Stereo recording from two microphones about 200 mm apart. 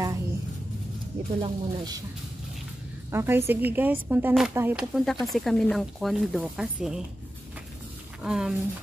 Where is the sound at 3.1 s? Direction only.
10° right (ahead or behind).